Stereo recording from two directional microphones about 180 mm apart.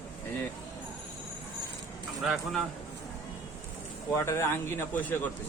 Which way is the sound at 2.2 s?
Centre (ahead or behind).